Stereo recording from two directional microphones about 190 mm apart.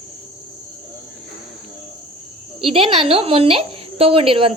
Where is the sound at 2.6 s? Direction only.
30° right (ahead or behind).